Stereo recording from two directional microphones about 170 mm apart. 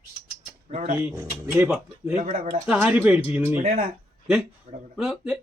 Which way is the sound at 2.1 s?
45° right (ahead or behind).